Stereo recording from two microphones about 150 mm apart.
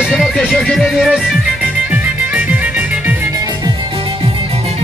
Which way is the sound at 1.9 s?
10° right (ahead or behind).